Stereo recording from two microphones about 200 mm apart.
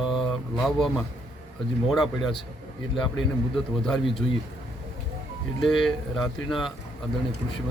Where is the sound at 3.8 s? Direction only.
Centre (ahead or behind).